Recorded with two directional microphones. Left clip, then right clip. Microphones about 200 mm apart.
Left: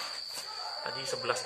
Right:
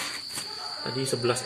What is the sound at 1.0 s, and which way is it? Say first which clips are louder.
Speech: right 7 dB; 30° right (ahead or behind).